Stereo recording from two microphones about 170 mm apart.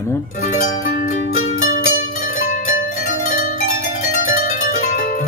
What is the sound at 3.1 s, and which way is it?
Harp, 50° left (ahead or behind).